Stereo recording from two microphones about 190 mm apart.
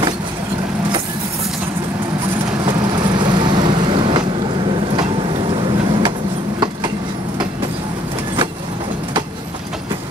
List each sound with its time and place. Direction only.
2.6 s vehicle: 25° right (ahead or behind)